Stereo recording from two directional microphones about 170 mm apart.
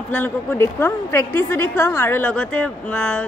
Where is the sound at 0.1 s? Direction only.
10° left (ahead or behind).